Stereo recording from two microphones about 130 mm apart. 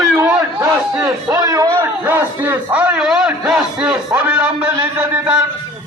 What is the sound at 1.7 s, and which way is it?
A man's voice, 15° right (ahead or behind).